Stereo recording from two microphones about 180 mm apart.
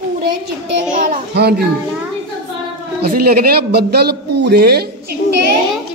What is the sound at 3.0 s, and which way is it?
A man's voice, 60° right (ahead or behind).